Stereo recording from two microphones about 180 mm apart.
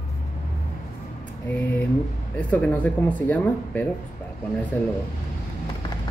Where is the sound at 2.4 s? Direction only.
5° left (ahead or behind).